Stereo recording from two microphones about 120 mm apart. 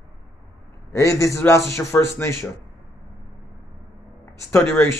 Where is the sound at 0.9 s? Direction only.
25° left (ahead or behind).